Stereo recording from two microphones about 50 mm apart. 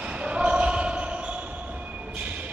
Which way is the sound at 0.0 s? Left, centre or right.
Right.